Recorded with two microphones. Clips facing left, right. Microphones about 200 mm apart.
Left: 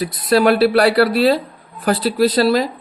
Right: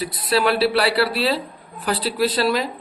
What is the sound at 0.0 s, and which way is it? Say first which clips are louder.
Speech: left 6 dB; 45° left (ahead or behind).